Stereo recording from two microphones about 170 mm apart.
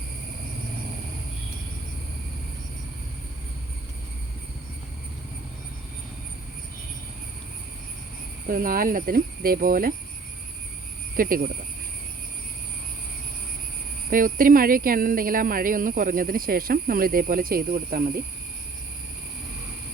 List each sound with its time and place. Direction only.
8.4 s speech: 55° right (ahead or behind)
11.2 s speech: 55° right (ahead or behind)
14.1 s speech: 55° right (ahead or behind)